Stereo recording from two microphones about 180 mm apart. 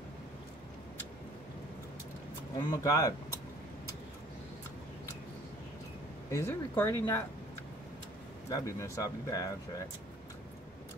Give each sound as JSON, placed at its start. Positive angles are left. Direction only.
{"t": 2.7, "sound": "speech", "side_deg": 20}
{"t": 6.3, "sound": "speech", "side_deg": 10}
{"t": 8.5, "sound": "speech", "side_deg": 20}